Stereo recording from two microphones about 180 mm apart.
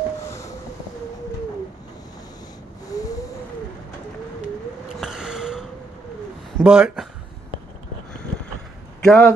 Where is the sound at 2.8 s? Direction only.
20° left (ahead or behind).